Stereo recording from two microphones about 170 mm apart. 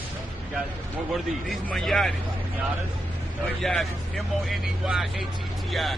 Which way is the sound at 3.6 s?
Centre (ahead or behind).